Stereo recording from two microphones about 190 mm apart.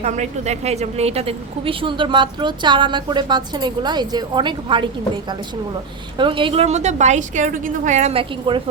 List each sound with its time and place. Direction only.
0.0 s a woman's voice: 35° right (ahead or behind)
6.1 s a woman's voice: 25° right (ahead or behind)